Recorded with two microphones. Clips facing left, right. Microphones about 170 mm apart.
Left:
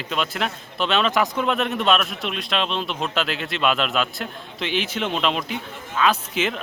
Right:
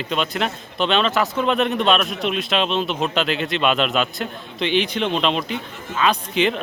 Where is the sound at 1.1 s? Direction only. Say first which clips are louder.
Right 1 dB; 15° left (ahead or behind).